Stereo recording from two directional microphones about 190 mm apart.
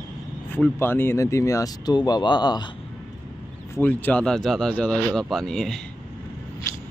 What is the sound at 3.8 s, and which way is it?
Speech, 10° left (ahead or behind).